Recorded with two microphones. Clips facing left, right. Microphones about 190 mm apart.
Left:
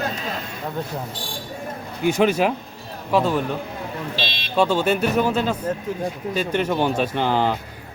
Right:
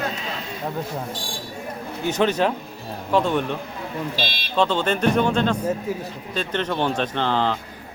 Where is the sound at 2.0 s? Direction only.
10° left (ahead or behind).